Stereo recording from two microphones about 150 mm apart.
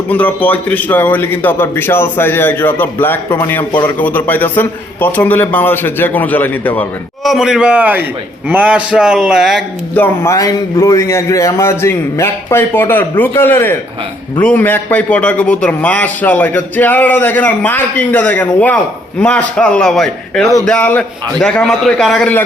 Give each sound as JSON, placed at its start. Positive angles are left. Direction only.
{"t": 0.1, "sound": "a man's voice", "side_deg": 10}
{"t": 7.3, "sound": "a man's voice", "side_deg": -5}
{"t": 9.9, "sound": "a man's voice", "side_deg": 15}